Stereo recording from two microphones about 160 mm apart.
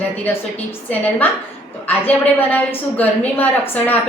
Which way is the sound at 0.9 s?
10° left (ahead or behind).